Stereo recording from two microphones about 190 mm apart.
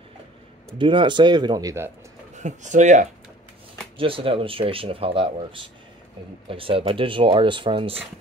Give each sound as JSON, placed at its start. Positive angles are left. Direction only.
{"t": 0.7, "sound": "speech", "side_deg": -25}
{"t": 2.3, "sound": "speech", "side_deg": -40}
{"t": 4.0, "sound": "speech", "side_deg": -30}